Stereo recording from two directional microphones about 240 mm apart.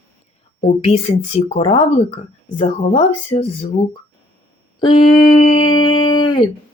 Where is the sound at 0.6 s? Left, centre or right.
Left.